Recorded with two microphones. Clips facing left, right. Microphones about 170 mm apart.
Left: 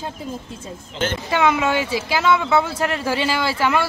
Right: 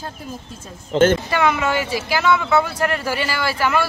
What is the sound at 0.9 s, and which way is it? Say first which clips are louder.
Speech: right 10 dB; 50° right (ahead or behind).